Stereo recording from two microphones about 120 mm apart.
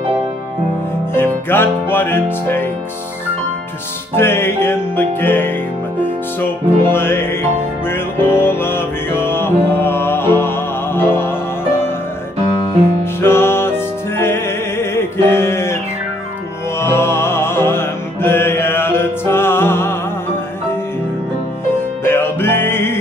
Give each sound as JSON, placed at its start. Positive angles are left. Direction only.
{"t": 1.1, "sound": "music", "side_deg": 20}
{"t": 4.1, "sound": "music", "side_deg": 20}
{"t": 6.8, "sound": "music", "side_deg": 20}
{"t": 13.0, "sound": "music", "side_deg": 20}
{"t": 22.0, "sound": "music", "side_deg": 20}